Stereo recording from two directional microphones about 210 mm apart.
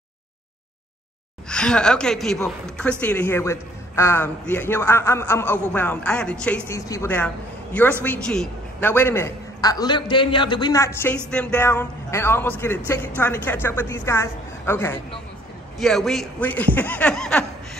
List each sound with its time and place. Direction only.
1.5 s a woman's voice: 5° left (ahead or behind)